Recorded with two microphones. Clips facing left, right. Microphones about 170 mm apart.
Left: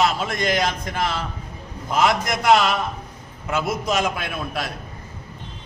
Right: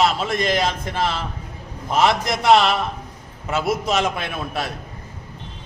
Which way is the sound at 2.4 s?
25° right (ahead or behind).